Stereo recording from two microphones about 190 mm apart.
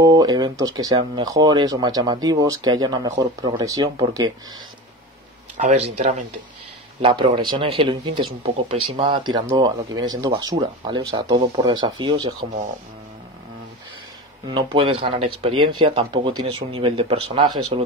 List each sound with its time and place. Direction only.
0.0 s speech: 20° right (ahead or behind)
5.6 s speech: 35° right (ahead or behind)
7.0 s speech: 25° right (ahead or behind)
14.5 s speech: 25° right (ahead or behind)